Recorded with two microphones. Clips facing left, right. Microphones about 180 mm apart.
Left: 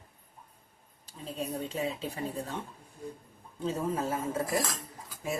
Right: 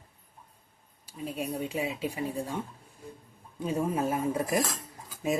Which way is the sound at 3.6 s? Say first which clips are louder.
Right 2 dB; 10° right (ahead or behind).